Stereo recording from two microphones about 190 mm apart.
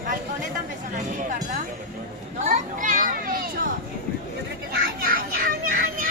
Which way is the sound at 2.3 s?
40° right (ahead or behind).